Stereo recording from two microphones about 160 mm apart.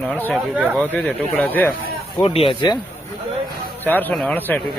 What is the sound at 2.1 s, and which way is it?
Speech, 30° left (ahead or behind).